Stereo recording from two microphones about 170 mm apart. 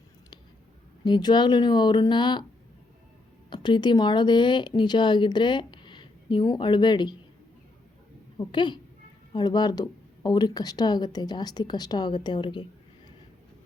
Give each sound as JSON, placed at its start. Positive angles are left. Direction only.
{"t": 1.0, "sound": "speech", "side_deg": 25}
{"t": 3.5, "sound": "speech", "side_deg": 25}
{"t": 8.4, "sound": "speech", "side_deg": 25}